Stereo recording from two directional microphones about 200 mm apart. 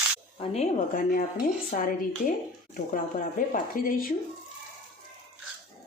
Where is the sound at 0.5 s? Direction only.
30° left (ahead or behind).